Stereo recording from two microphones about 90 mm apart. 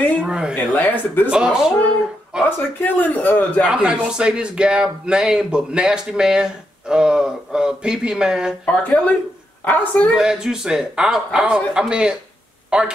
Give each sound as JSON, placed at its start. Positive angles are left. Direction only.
{"t": 0.2, "sound": "speech", "side_deg": -10}
{"t": 0.7, "sound": "a man's voice", "side_deg": 20}
{"t": 1.3, "sound": "speech", "side_deg": -10}
{"t": 2.8, "sound": "a man's voice", "side_deg": 20}
{"t": 3.6, "sound": "speech", "side_deg": -10}
{"t": 8.6, "sound": "speech", "side_deg": 15}
{"t": 10.1, "sound": "speech", "side_deg": -10}
{"t": 12.6, "sound": "a sound", "side_deg": -10}